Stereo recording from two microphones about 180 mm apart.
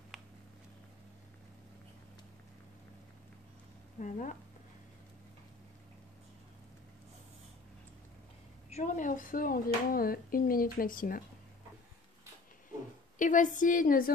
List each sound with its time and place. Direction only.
0.1 s a sound: 5° right (ahead or behind)
4.0 s speech: 45° left (ahead or behind)
8.6 s speech: 40° left (ahead or behind)
13.2 s speech: 45° left (ahead or behind)